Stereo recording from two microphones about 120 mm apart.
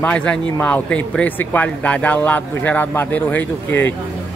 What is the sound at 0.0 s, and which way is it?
Speech, 10° left (ahead or behind).